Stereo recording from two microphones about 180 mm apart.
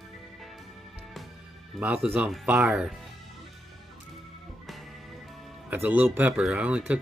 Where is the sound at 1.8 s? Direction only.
10° right (ahead or behind).